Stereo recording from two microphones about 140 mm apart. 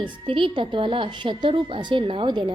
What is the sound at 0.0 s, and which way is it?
A woman's voice, 35° right (ahead or behind).